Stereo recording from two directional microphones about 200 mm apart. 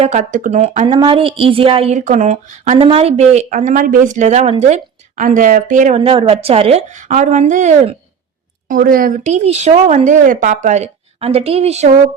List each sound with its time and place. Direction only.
0.0 s a woman's voice: 35° right (ahead or behind)